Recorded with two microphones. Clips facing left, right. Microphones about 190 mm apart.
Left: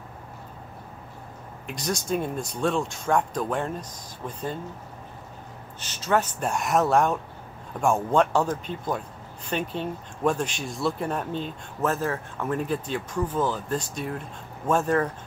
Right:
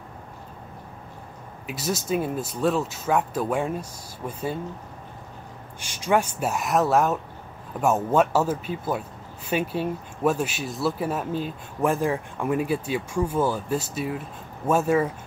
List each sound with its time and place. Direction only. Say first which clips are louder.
1.7 s speech: right 1 dB; 5° right (ahead or behind)
5.8 s speech: right 2 dB; 10° right (ahead or behind)